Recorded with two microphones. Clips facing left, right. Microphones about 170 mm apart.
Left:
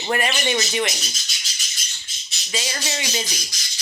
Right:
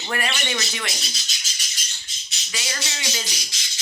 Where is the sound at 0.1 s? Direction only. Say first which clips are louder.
Left 5 dB; 25° left (ahead or behind).